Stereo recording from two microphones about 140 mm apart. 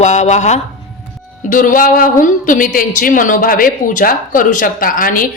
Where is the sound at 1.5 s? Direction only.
75° left (ahead or behind).